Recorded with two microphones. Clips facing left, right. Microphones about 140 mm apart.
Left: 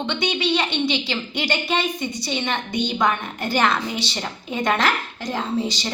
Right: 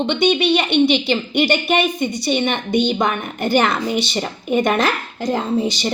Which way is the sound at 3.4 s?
55° right (ahead or behind).